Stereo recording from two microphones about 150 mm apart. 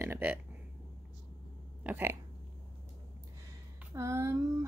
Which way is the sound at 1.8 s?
15° right (ahead or behind).